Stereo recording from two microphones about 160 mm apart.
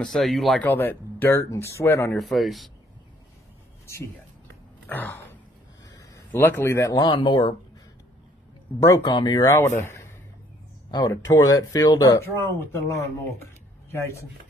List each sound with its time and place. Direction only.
0.0 s speech: centre (ahead or behind)
0.7 s speech: 15° left (ahead or behind)
2.1 s speech: centre (ahead or behind)
4.8 s a sound: 10° left (ahead or behind)
5.9 s speech: 15° left (ahead or behind)
8.7 s speech: 25° left (ahead or behind)
9.8 s a sound: 15° left (ahead or behind)
10.9 s speech: 25° left (ahead or behind)